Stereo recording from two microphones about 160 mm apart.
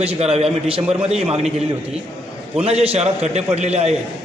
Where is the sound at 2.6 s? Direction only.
40° right (ahead or behind).